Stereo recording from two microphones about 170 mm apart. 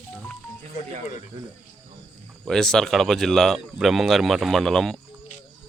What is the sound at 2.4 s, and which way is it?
Speech, 5° left (ahead or behind).